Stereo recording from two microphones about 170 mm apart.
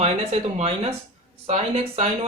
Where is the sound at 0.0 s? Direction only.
35° right (ahead or behind).